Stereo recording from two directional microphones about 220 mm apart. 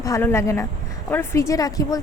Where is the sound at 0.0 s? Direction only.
10° left (ahead or behind).